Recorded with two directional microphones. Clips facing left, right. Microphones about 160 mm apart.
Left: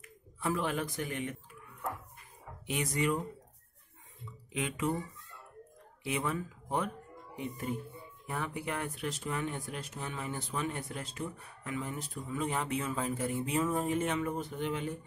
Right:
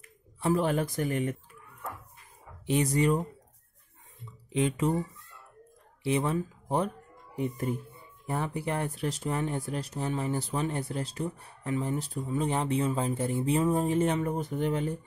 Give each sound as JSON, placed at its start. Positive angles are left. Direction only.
{"t": 0.4, "sound": "speech", "side_deg": -35}
{"t": 2.6, "sound": "speech", "side_deg": -35}
{"t": 4.5, "sound": "speech", "side_deg": -30}
{"t": 6.0, "sound": "speech", "side_deg": -30}
{"t": 8.3, "sound": "speech", "side_deg": -35}